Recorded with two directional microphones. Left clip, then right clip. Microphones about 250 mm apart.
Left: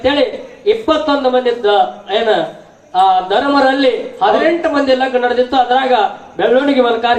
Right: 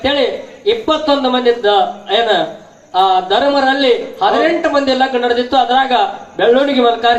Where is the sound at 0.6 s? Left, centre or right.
Right.